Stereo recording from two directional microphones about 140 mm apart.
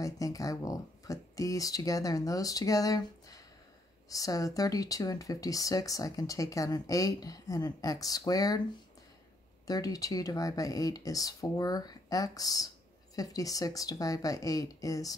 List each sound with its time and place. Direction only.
0.0 s speech: 25° left (ahead or behind)
9.7 s speech: 25° left (ahead or behind)